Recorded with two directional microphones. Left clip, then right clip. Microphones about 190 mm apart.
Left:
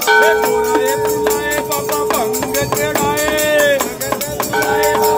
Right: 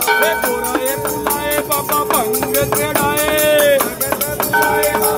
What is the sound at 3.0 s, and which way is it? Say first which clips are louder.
Music: right 2 dB; 15° right (ahead or behind).